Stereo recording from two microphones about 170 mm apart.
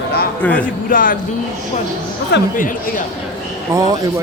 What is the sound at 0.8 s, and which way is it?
Speech, 55° left (ahead or behind).